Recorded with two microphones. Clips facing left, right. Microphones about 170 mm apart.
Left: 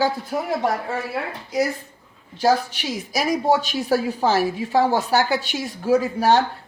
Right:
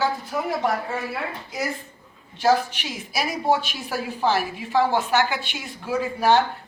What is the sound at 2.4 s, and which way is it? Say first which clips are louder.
Speech: left 1 dB; 40° left (ahead or behind).